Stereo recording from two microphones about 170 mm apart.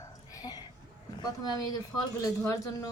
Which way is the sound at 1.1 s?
25° left (ahead or behind).